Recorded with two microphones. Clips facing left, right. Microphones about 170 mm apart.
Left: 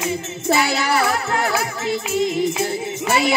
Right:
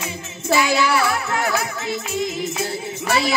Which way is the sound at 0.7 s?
40° left (ahead or behind).